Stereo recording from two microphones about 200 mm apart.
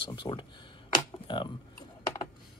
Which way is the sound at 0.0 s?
25° left (ahead or behind).